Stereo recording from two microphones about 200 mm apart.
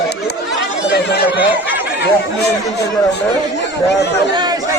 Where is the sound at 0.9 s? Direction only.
55° left (ahead or behind).